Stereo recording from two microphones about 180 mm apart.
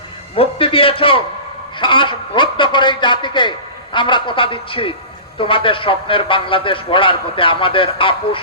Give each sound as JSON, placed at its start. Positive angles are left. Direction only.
{"t": 0.3, "sound": "a man's voice", "side_deg": 30}